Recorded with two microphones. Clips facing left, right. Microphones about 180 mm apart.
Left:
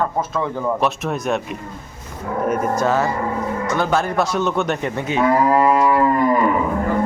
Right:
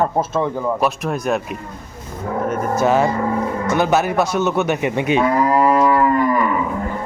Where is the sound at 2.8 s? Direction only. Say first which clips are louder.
Right 3 dB; 15° right (ahead or behind).